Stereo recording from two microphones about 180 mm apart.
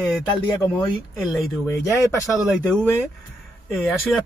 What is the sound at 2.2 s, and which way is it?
Speech, centre (ahead or behind).